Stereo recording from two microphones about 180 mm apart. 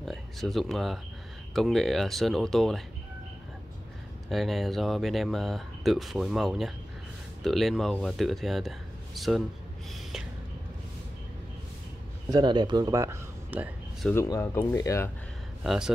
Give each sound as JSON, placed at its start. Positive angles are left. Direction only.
{"t": 0.0, "sound": "speech", "side_deg": 0}
{"t": 4.3, "sound": "speech", "side_deg": 0}
{"t": 12.3, "sound": "speech", "side_deg": -25}
{"t": 14.1, "sound": "speech", "side_deg": 15}
{"t": 15.6, "sound": "a man's voice", "side_deg": 0}